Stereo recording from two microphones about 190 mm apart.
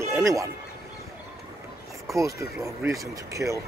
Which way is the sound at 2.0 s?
15° right (ahead or behind).